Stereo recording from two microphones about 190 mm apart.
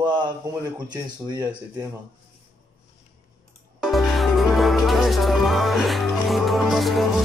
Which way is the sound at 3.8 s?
Centre (ahead or behind).